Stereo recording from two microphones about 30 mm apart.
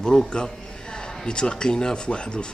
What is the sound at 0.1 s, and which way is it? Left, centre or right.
Speech, left.